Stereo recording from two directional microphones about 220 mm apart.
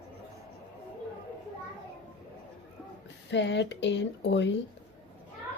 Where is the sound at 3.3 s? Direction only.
55° left (ahead or behind).